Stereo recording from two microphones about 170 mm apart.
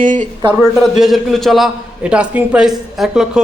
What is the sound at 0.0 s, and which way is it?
Speech, 50° right (ahead or behind).